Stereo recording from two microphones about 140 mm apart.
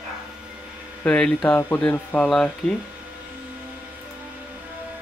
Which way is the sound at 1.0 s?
5° left (ahead or behind).